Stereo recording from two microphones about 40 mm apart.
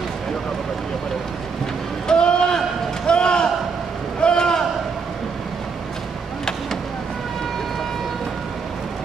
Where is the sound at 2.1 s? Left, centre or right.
Left.